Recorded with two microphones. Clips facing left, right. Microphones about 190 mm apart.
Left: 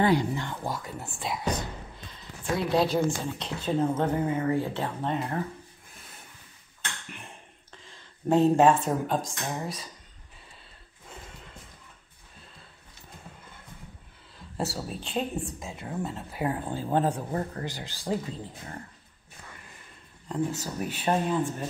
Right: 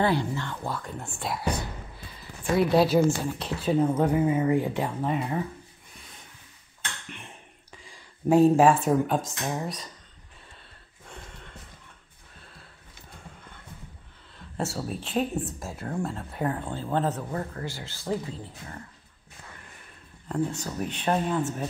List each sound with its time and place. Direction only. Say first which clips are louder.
0.0 s speech: left 1 dB; 15° left (ahead or behind); by 1.5 s centre (ahead or behind)
2.5 s a woman's voice: right 4 dB; 5° right (ahead or behind)
7.7 s speech: right 2 dB; 10° right (ahead or behind)
14.6 s speech: right 1 dB; centre (ahead or behind)
17.3 s a man's voice: left 1 dB; 30° left (ahead or behind)
17.6 s speech: even; 15° left (ahead or behind)
20.2 s speech: right 1 dB; centre (ahead or behind)